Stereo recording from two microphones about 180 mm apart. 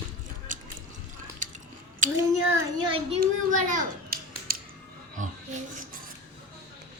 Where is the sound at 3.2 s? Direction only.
45° right (ahead or behind).